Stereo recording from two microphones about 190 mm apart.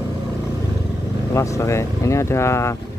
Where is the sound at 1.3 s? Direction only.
15° left (ahead or behind).